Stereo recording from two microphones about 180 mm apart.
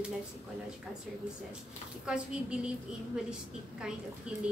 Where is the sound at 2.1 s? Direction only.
5° right (ahead or behind).